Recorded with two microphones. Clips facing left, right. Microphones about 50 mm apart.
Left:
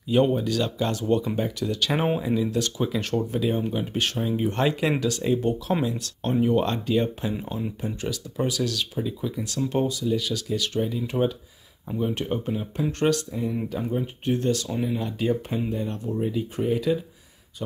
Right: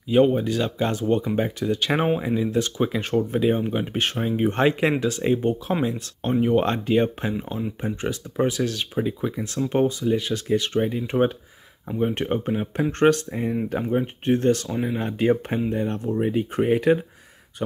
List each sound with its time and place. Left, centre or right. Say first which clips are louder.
0.1 s speech: right 3 dB; centre; by 17.0 s right